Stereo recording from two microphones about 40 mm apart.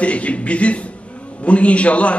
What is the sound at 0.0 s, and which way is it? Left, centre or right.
A man's voice, left.